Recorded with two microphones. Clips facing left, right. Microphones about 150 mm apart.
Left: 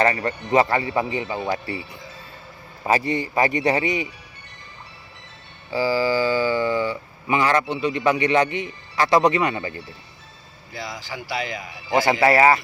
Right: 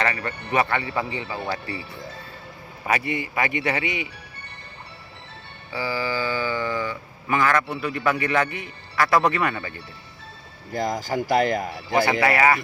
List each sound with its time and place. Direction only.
0.0 s speech: 30° left (ahead or behind)
2.8 s speech: 35° left (ahead or behind)
5.7 s speech: 25° left (ahead or behind)
10.7 s speech: 45° right (ahead or behind)
12.2 s speech: 25° left (ahead or behind)